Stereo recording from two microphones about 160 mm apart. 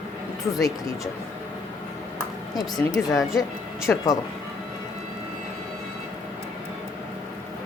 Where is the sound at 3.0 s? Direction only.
10° left (ahead or behind).